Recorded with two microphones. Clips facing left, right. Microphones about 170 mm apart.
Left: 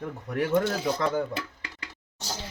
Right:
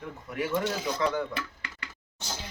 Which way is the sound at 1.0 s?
45° left (ahead or behind).